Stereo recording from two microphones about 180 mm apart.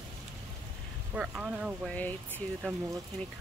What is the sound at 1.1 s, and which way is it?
Speech, 5° right (ahead or behind).